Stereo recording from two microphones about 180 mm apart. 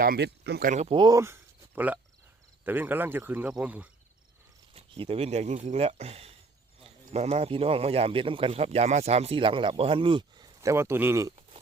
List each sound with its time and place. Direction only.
0.0 s speech: 60° right (ahead or behind)
0.7 s a man's voice: 40° right (ahead or behind)
0.9 s speech: 20° right (ahead or behind)
4.7 s a man's voice: 30° right (ahead or behind); by 11.3 s 15° right (ahead or behind)